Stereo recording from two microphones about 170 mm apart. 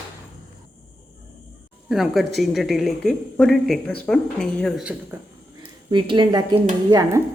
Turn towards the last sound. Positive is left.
turn(degrees=-20)  # may be behind; listen again after turning